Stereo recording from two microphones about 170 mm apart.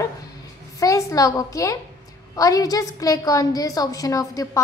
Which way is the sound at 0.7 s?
20° left (ahead or behind).